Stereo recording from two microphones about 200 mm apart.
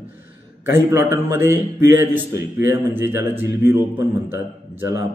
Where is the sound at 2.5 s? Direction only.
10° right (ahead or behind).